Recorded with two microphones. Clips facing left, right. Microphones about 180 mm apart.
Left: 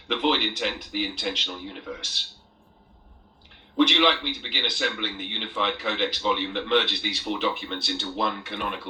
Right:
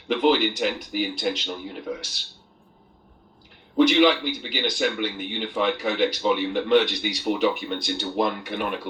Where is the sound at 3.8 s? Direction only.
45° right (ahead or behind).